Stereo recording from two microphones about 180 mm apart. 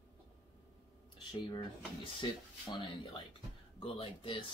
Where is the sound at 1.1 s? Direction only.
25° left (ahead or behind).